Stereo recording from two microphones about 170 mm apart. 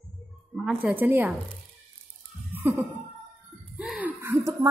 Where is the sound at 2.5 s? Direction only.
10° right (ahead or behind).